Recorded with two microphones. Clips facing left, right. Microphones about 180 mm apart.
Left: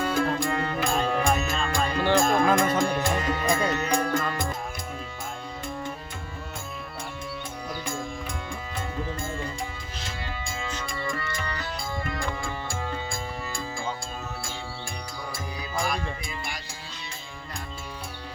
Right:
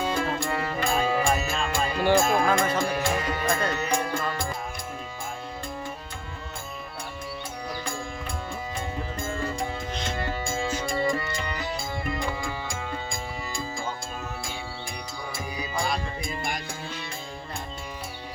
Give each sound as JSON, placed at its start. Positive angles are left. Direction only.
{"t": 0.0, "sound": "music", "side_deg": 0}
{"t": 10.2, "sound": "music", "side_deg": -50}
{"t": 11.0, "sound": "music", "side_deg": -20}
{"t": 16.2, "sound": "music", "side_deg": -50}